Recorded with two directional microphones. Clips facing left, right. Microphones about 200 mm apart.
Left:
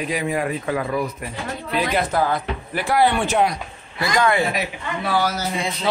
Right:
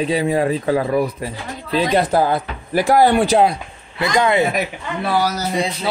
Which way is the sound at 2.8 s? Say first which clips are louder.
Right 5 dB; 40° right (ahead or behind).